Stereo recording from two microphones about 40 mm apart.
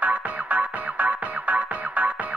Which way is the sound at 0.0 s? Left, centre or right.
Right.